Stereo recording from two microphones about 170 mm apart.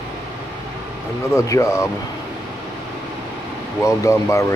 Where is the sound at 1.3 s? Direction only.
20° left (ahead or behind).